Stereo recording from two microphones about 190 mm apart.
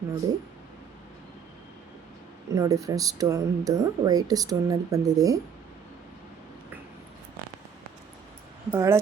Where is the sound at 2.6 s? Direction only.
20° right (ahead or behind).